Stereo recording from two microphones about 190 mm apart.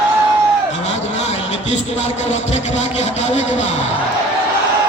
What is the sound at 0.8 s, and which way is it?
Speech, 35° left (ahead or behind).